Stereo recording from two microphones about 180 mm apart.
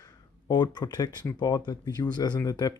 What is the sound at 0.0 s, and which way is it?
Speech, 20° left (ahead or behind).